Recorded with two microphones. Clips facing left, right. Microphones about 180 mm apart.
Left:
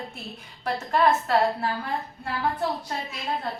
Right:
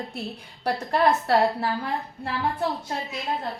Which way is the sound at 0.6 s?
35° right (ahead or behind).